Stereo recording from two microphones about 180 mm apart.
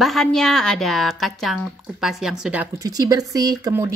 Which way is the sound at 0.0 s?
Centre (ahead or behind).